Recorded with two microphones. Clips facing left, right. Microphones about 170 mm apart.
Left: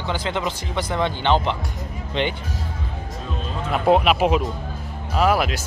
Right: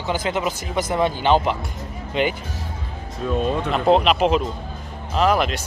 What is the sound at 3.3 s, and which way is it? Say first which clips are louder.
Speech: right 12 dB; 55° right (ahead or behind).